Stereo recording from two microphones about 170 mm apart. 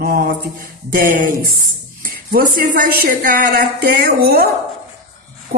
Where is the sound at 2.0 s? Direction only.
55° right (ahead or behind).